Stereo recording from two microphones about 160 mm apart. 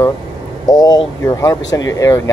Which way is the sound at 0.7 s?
25° left (ahead or behind).